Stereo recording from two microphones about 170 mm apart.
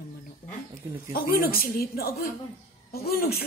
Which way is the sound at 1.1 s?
60° left (ahead or behind).